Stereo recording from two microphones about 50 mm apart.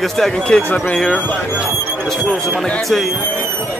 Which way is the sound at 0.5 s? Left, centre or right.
Left.